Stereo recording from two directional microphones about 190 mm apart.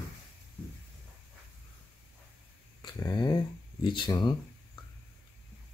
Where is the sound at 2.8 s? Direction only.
20° left (ahead or behind).